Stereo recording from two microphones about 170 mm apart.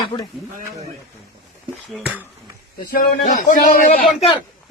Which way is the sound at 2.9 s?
60° left (ahead or behind).